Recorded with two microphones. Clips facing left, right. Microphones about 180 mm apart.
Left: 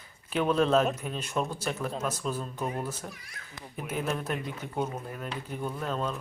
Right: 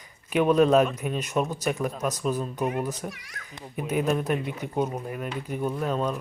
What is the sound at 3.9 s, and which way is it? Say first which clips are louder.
Speech: right 7 dB; 10° right (ahead or behind).